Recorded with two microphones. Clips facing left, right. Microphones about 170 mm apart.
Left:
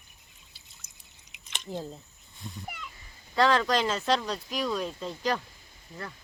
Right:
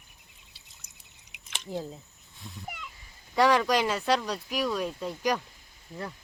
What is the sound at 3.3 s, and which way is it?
Speech, 15° right (ahead or behind).